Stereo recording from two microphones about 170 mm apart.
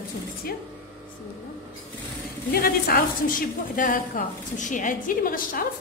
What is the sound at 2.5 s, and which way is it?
A woman's voice, 60° left (ahead or behind).